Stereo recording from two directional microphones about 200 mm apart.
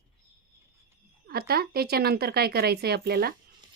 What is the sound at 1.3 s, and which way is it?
Speech, 50° right (ahead or behind).